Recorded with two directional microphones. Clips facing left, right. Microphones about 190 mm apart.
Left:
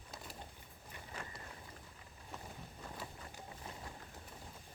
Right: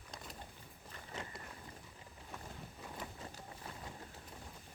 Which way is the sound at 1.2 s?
20° right (ahead or behind).